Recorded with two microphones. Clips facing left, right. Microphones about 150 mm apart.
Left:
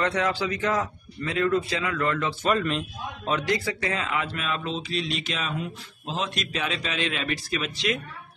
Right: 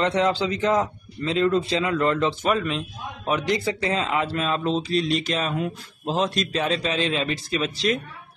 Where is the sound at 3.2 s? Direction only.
15° right (ahead or behind); by 8.0 s 35° right (ahead or behind).